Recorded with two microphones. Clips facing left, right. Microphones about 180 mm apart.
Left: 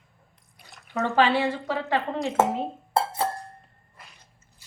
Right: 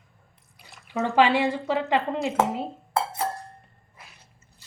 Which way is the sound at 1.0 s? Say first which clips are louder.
Right 1 dB; 15° right (ahead or behind).